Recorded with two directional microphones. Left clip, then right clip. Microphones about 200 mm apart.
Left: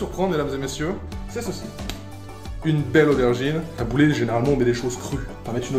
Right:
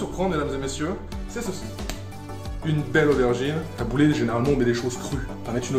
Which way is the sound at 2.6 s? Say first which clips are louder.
Left 3 dB; 35° left (ahead or behind).